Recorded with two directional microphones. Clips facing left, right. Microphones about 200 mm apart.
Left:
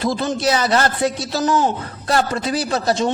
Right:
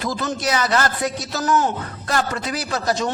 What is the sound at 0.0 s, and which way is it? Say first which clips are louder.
A man's voice: left 5 dB; 30° left (ahead or behind).